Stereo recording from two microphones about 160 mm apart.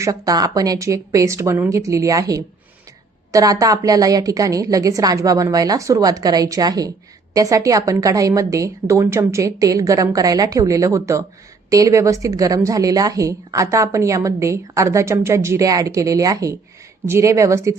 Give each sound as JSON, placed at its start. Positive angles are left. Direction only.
{"t": 0.0, "sound": "a woman's voice", "side_deg": -20}